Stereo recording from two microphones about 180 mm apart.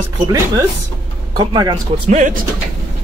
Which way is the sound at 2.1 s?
45° right (ahead or behind).